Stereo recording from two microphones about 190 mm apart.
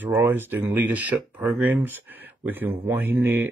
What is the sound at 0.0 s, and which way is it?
Speech, 10° right (ahead or behind).